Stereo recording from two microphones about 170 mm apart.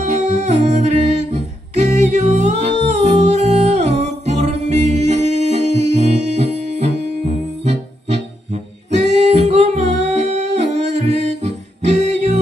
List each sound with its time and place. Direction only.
0.0 s music: 45° right (ahead or behind)
1.9 s music: 45° right (ahead or behind)
9.1 s singing: 40° right (ahead or behind)